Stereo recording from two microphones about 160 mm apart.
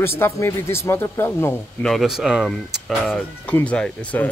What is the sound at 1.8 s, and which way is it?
Speech, centre (ahead or behind).